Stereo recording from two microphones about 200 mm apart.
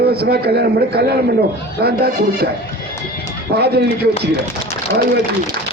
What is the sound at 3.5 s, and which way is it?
Speech, 55° right (ahead or behind).